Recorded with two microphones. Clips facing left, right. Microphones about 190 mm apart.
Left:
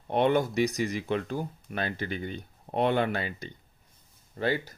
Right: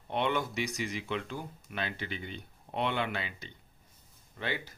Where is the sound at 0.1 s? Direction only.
40° left (ahead or behind).